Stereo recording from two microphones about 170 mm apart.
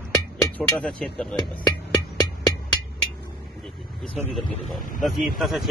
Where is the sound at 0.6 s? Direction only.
5° left (ahead or behind).